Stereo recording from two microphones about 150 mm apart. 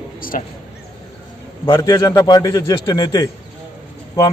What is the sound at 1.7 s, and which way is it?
Speech, 25° left (ahead or behind).